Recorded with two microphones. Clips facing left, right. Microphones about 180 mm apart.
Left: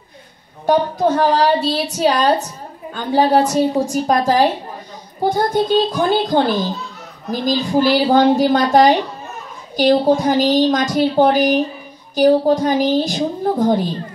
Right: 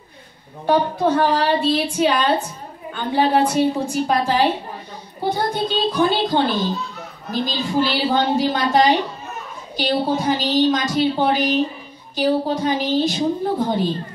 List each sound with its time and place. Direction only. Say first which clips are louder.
0.7 s a woman's voice: left 2 dB; 45° left (ahead or behind)
7.4 s a woman's voice: left 7 dB; 45° left (ahead or behind)